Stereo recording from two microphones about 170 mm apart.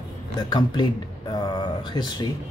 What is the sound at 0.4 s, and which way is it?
Speech, 25° left (ahead or behind).